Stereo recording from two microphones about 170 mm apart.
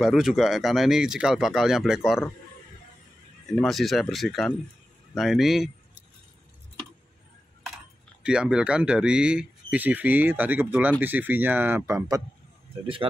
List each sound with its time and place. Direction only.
0.0 s speech: centre (ahead or behind)
3.5 s speech: centre (ahead or behind)
8.2 s speech: 5° right (ahead or behind)
12.8 s speech: 30° right (ahead or behind)